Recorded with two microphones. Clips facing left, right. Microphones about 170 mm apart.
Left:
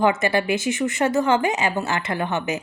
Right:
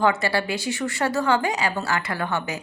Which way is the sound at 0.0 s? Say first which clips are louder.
Left 2 dB; 20° left (ahead or behind).